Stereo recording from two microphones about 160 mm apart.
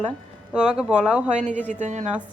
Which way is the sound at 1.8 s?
50° right (ahead or behind).